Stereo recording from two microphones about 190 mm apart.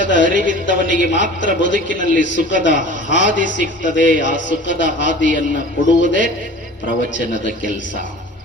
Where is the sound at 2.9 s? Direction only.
70° left (ahead or behind).